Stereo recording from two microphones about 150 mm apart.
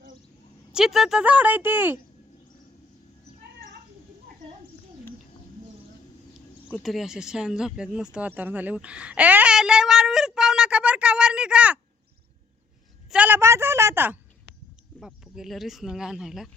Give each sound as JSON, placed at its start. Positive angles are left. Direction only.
{"t": 0.7, "sound": "speech", "side_deg": -5}
{"t": 6.8, "sound": "speech", "side_deg": 0}
{"t": 13.1, "sound": "speech", "side_deg": -10}
{"t": 15.0, "sound": "speech", "side_deg": -5}